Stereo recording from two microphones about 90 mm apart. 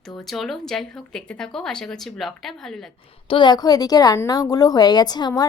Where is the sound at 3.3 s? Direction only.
55° left (ahead or behind).